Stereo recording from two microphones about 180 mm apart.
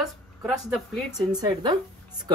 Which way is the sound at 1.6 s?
25° right (ahead or behind).